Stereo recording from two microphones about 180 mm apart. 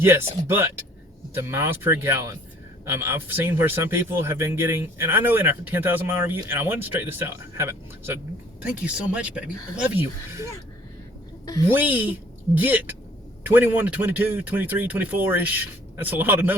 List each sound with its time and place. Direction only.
0.0 s speech: 15° right (ahead or behind)
11.7 s speech: 10° right (ahead or behind)